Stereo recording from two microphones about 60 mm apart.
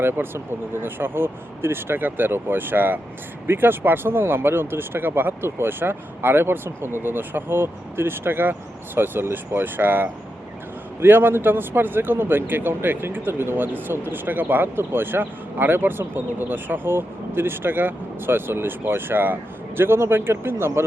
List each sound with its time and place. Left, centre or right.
0.0 s a man's voice: right